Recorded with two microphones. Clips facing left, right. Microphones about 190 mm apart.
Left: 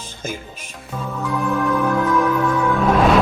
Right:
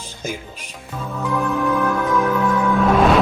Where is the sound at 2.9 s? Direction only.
5° right (ahead or behind).